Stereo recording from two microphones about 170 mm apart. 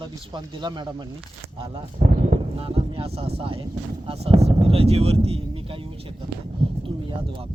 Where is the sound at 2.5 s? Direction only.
35° right (ahead or behind).